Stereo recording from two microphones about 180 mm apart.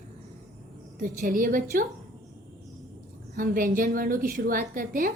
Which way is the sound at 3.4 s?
50° right (ahead or behind).